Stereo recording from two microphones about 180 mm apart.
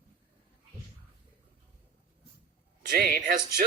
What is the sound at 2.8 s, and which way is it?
Speech, 55° right (ahead or behind).